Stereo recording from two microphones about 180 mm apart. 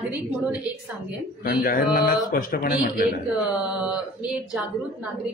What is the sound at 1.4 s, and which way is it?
Speech, 55° left (ahead or behind).